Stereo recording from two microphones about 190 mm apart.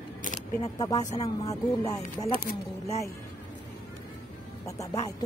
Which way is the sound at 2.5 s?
50° left (ahead or behind).